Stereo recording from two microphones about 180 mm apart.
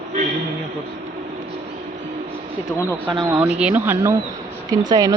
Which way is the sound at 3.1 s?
25° right (ahead or behind).